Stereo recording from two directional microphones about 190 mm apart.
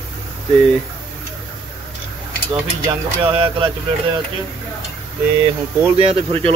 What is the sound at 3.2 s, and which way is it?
Speech, 25° right (ahead or behind).